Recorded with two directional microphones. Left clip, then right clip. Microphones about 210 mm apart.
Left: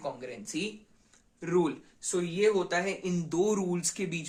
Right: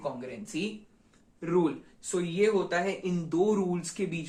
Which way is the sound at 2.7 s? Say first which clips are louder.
Right 1 dB; 55° left (ahead or behind).